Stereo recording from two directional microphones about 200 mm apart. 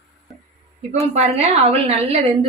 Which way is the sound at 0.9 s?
30° right (ahead or behind).